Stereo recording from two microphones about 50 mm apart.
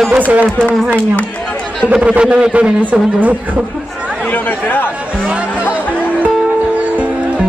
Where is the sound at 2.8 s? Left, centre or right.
Right.